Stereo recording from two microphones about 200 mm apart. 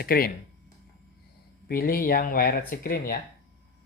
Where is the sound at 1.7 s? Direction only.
50° left (ahead or behind).